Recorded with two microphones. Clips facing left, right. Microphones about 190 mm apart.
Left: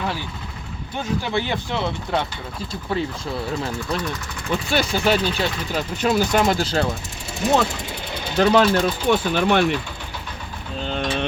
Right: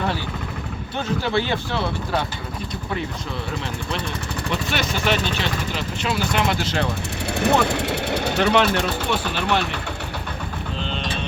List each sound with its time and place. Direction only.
1.2 s speech: 15° left (ahead or behind)
4.7 s speech: 35° left (ahead or behind)
7.3 s speech: 60° right (ahead or behind)
8.4 s speech: 35° left (ahead or behind)
9.0 s speech: 50° left (ahead or behind)